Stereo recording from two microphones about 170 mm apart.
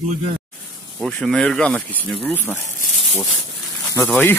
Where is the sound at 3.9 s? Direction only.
15° left (ahead or behind).